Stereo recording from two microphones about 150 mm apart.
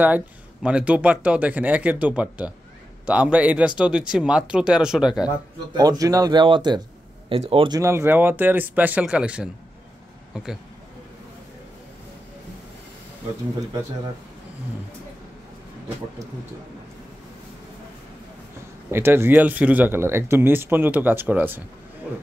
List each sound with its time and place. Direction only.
0.0 s speech: 10° right (ahead or behind)
5.8 s speech: 25° right (ahead or behind)
7.8 s speech: 15° right (ahead or behind)
18.9 s speech: 15° right (ahead or behind)